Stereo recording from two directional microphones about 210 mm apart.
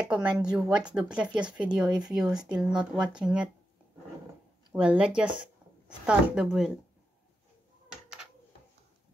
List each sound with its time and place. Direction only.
0.0 s speech: 5° right (ahead or behind)
4.7 s speech: 5° right (ahead or behind)
7.9 s a sound: 5° right (ahead or behind)